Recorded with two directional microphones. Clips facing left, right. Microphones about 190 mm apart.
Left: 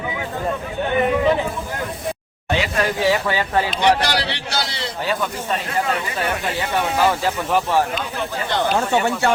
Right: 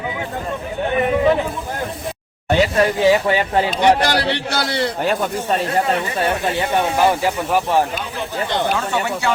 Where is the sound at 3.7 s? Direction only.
50° right (ahead or behind); by 8.6 s 20° right (ahead or behind).